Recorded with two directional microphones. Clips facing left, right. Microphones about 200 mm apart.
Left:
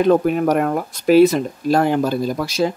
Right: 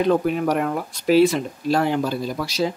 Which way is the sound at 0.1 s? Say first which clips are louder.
Left 4 dB; 50° left (ahead or behind).